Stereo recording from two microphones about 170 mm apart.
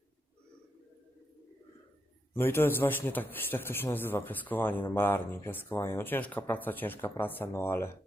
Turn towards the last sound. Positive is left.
turn(degrees=15)  # may be behind; listen again after turning